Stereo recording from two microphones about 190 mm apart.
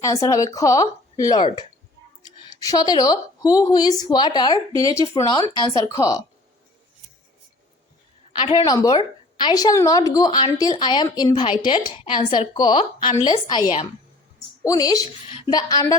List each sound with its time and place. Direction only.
0.0 s speech: 15° left (ahead or behind)
2.5 s a woman's voice: 20° left (ahead or behind)
8.4 s a woman's voice: 25° left (ahead or behind)